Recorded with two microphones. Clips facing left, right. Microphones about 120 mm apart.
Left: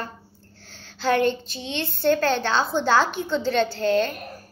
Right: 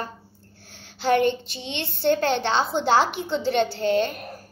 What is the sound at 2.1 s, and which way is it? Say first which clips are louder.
A child's voice: even; 20° right (ahead or behind).